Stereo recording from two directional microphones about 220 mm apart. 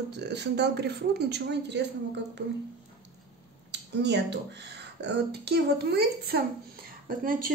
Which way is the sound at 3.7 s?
50° right (ahead or behind).